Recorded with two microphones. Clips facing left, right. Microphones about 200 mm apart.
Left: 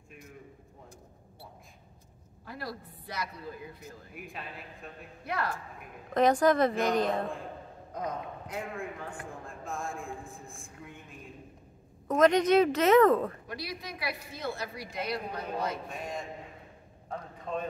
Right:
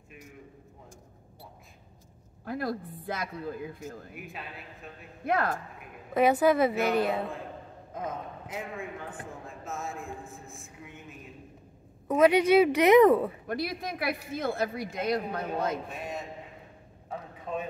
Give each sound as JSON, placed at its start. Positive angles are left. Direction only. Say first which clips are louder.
{"t": 2.4, "sound": "a woman's voice", "louder": "right 8 dB", "side_deg": -50}
{"t": 4.1, "sound": "a man's voice", "louder": "right 1 dB", "side_deg": 0}
{"t": 5.2, "sound": "a woman's voice", "louder": "right 6 dB", "side_deg": -50}
{"t": 6.1, "sound": "a woman's voice", "louder": "right 1 dB", "side_deg": -10}
{"t": 13.5, "sound": "a woman's voice", "louder": "right 7 dB", "side_deg": -50}
{"t": 15.9, "sound": "a man's voice", "louder": "right 1 dB", "side_deg": -5}
{"t": 17.1, "sound": "a sound", "louder": "even", "side_deg": -5}